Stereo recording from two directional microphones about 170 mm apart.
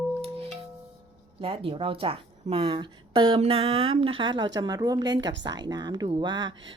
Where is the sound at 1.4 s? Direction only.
30° right (ahead or behind).